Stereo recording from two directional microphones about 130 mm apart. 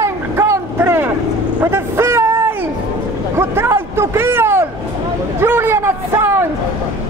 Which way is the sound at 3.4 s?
20° right (ahead or behind).